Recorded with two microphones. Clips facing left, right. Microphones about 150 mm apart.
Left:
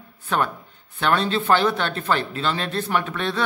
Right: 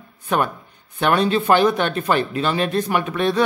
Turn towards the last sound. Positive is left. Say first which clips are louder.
# right 5 dB
turn(degrees=-15)  # may be behind; listen again after turning